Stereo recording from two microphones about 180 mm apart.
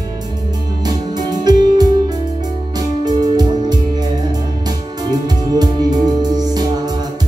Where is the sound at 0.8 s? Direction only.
20° right (ahead or behind).